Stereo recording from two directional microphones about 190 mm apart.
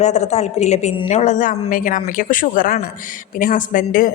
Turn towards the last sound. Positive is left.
turn(degrees=45)  # may be behind; listen again after turning